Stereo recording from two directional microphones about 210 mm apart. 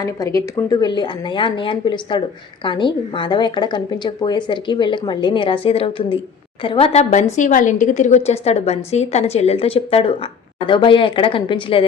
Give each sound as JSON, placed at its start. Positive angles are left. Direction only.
{"t": 0.3, "sound": "a woman's voice", "side_deg": 20}